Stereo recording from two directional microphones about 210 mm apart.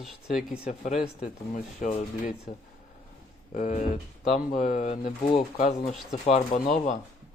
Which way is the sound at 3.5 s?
35° left (ahead or behind).